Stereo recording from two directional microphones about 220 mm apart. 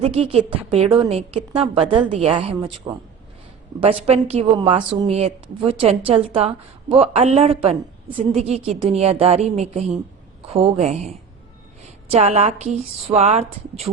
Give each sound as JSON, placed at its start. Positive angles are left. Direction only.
{"t": 0.0, "sound": "a woman's voice", "side_deg": -25}
{"t": 2.6, "sound": "speech", "side_deg": -15}
{"t": 3.8, "sound": "a woman's voice", "side_deg": -25}
{"t": 12.1, "sound": "a woman's voice", "side_deg": -25}